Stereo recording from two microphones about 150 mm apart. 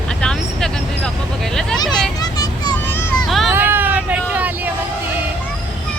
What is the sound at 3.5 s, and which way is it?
Hubbub, 15° right (ahead or behind).